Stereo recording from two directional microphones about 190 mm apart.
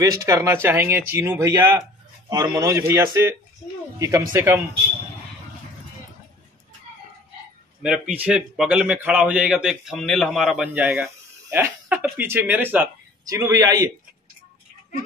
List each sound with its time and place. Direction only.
0.0 s speech: 15° right (ahead or behind)
7.8 s a man's voice: 5° right (ahead or behind)